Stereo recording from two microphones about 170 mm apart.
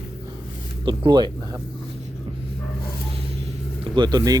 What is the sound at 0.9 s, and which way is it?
Speech, 25° right (ahead or behind).